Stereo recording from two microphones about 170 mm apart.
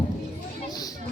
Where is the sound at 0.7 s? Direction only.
20° left (ahead or behind).